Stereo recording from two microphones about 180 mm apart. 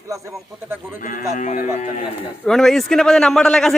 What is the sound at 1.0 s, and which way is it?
Speech, 45° left (ahead or behind).